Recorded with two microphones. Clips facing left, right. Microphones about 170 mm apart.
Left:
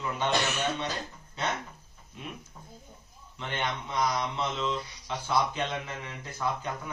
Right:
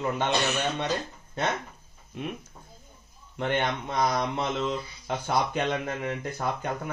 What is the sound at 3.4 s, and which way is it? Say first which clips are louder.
Speech: right 6 dB; 55° right (ahead or behind).